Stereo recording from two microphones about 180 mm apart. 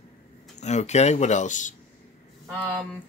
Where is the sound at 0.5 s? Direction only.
40° left (ahead or behind).